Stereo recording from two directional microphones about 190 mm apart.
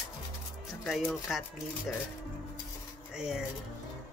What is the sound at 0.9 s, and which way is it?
Speech, centre (ahead or behind).